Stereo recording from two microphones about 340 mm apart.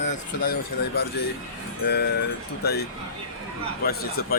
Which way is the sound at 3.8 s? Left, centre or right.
Left.